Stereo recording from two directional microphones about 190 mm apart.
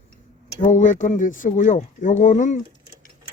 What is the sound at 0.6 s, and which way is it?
Speech, 40° left (ahead or behind).